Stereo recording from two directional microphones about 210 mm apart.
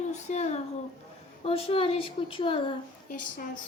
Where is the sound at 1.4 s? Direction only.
25° left (ahead or behind).